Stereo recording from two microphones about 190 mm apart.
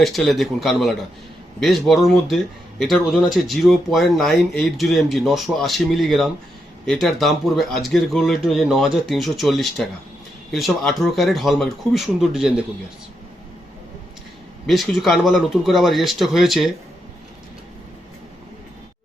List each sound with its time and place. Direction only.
0.0 s speech: centre (ahead or behind)
14.7 s speech: centre (ahead or behind)